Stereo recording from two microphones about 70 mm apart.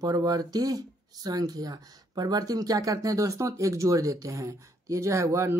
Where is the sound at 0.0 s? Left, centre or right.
Right.